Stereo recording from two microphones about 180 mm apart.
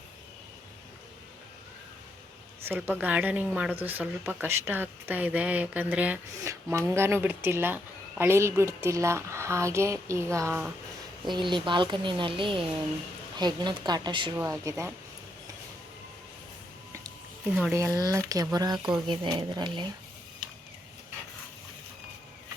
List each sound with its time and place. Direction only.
2.6 s speech: 10° right (ahead or behind)
11.3 s speech: 25° right (ahead or behind)
14.3 s speech: 15° right (ahead or behind)
17.6 s speech: 15° right (ahead or behind)